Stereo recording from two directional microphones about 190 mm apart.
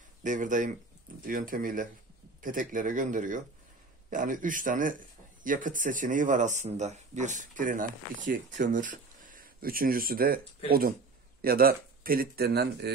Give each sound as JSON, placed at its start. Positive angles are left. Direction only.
{"t": 0.2, "sound": "speech", "side_deg": -40}